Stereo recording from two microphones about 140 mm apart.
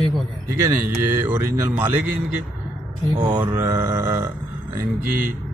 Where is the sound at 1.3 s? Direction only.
15° right (ahead or behind).